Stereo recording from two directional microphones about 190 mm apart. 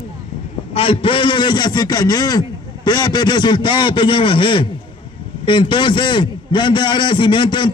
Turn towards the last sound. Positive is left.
turn(degrees=25)  # may be behind; listen again after turning